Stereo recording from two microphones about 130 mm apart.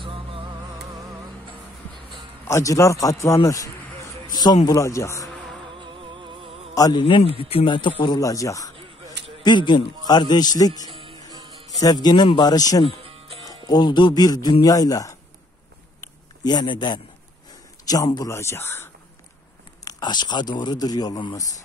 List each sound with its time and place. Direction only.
0.0 s music: 40° right (ahead or behind)
2.4 s a man's voice: 25° left (ahead or behind)
4.3 s a sound: 35° left (ahead or behind)
4.6 s a man's voice: 25° left (ahead or behind)
5.8 s music: 40° right (ahead or behind)
6.7 s a man's voice: 30° left (ahead or behind)
9.4 s a man's voice: 35° left (ahead or behind)
13.0 s music: 45° right (ahead or behind)
13.5 s a man's voice: 35° left (ahead or behind)
16.4 s a man's voice: 35° left (ahead or behind); by 18.9 s 20° left (ahead or behind)
19.8 s a man's voice: 30° left (ahead or behind)